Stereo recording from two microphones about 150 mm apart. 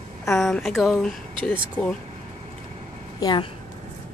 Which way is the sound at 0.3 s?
Centre (ahead or behind).